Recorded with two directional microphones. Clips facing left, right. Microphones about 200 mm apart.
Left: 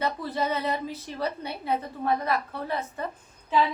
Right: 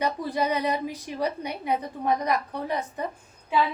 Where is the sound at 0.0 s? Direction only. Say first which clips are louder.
Right 2 dB; 15° right (ahead or behind).